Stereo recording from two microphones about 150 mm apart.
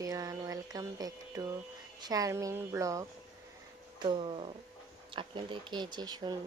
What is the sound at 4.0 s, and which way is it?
Speech, 30° right (ahead or behind).